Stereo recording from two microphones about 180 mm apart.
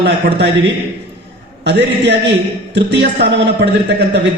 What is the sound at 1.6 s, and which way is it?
A man's voice, 70° right (ahead or behind).